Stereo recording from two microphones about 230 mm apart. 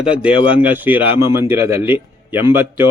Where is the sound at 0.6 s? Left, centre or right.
Centre.